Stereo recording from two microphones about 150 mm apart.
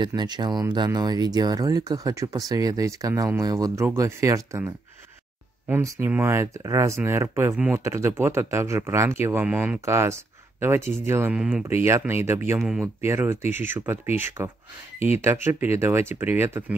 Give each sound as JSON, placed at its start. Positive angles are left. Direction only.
{"t": 0.0, "sound": "speech", "side_deg": -30}